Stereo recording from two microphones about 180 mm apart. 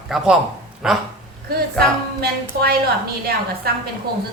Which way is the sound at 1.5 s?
60° right (ahead or behind).